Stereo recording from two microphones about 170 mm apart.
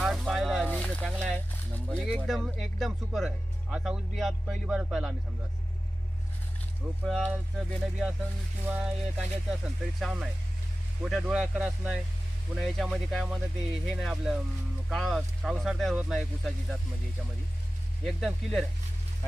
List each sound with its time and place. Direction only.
0.0 s a sound: centre (ahead or behind)
0.7 s speech: 5° left (ahead or behind)
7.0 s speech: centre (ahead or behind)
18.0 s speech: centre (ahead or behind)